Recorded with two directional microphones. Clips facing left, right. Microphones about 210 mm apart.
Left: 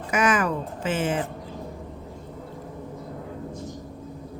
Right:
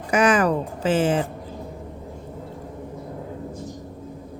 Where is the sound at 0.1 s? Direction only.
30° right (ahead or behind).